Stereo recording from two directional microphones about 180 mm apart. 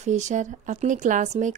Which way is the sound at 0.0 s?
40° right (ahead or behind).